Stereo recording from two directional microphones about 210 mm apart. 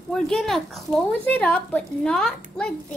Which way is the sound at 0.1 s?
Centre (ahead or behind).